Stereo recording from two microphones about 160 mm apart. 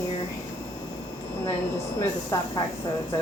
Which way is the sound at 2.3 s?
25° left (ahead or behind).